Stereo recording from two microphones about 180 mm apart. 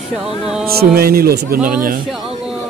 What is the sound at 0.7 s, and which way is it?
Speech, 60° right (ahead or behind).